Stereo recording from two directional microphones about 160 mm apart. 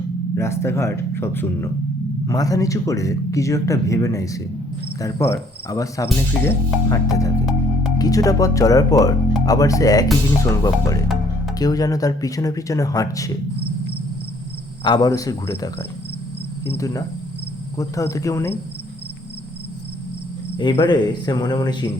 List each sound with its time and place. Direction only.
0.3 s speech: 15° left (ahead or behind)
14.8 s speech: 25° left (ahead or behind)
20.6 s speech: 30° left (ahead or behind)